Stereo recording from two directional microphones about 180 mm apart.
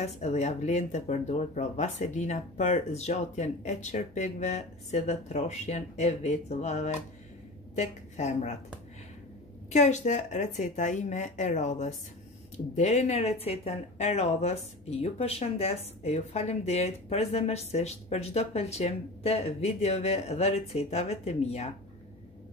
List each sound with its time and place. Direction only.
0.0 s a woman's voice: 40° left (ahead or behind)
9.7 s speech: 40° left (ahead or behind)